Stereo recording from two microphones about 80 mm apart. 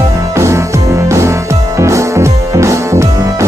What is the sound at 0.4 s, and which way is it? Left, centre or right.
Music, right.